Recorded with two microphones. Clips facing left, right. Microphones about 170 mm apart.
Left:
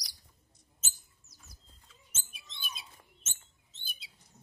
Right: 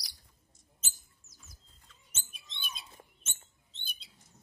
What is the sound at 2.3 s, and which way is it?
Bird, centre (ahead or behind).